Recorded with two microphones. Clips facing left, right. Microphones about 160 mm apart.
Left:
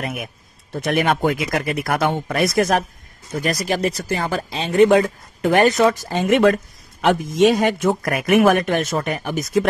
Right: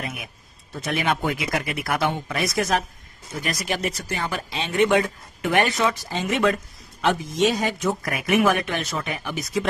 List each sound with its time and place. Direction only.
0.0 s a man's voice: 60° left (ahead or behind)
3.3 s speech: 40° left (ahead or behind)